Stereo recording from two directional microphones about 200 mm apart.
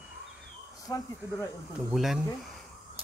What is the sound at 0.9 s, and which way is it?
Speech, 20° left (ahead or behind).